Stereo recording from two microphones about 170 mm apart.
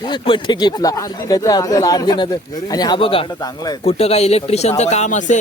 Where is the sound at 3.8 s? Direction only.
35° left (ahead or behind).